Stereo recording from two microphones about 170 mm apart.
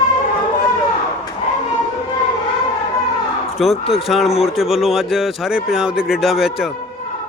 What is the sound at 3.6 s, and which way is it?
Speech, centre (ahead or behind).